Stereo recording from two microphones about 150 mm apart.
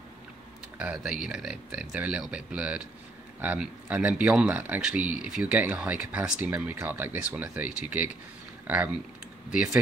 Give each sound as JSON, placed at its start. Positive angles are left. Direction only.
{"t": 0.7, "sound": "speech", "side_deg": -5}